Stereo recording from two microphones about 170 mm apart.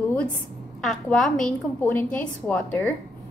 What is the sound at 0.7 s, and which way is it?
A woman's voice, centre (ahead or behind).